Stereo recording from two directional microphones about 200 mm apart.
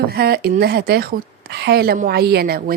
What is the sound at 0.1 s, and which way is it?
A woman's voice, 50° right (ahead or behind).